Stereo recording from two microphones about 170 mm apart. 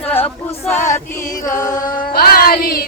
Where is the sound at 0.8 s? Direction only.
45° left (ahead or behind).